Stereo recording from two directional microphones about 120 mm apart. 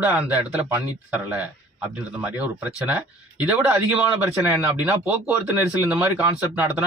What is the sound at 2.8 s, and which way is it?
Speech, 10° right (ahead or behind).